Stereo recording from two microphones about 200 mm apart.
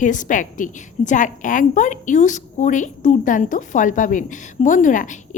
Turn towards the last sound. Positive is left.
turn(degrees=40)  # may be behind; listen again after turning